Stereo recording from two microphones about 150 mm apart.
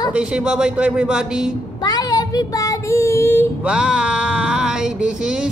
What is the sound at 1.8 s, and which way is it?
Child singing, 25° left (ahead or behind).